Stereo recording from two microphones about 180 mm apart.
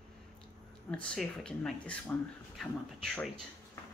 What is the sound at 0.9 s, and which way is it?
Speech, 5° left (ahead or behind).